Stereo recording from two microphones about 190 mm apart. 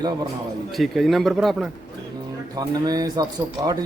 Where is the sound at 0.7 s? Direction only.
Centre (ahead or behind).